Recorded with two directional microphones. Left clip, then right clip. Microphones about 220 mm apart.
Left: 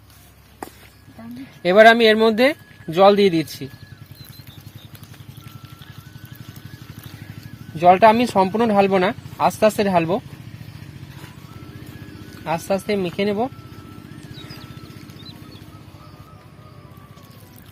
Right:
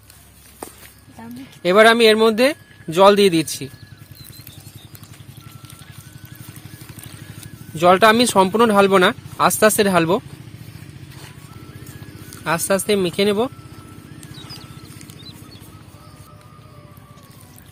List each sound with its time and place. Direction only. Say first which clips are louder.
1.4 s speech: left 1 dB; 10° right (ahead or behind)
7.8 s speech: even; 20° right (ahead or behind)
12.5 s speech: right 3 dB; 25° right (ahead or behind)